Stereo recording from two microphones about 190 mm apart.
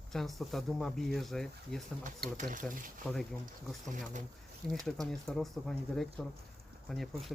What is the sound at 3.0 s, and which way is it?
Speech, 5° right (ahead or behind).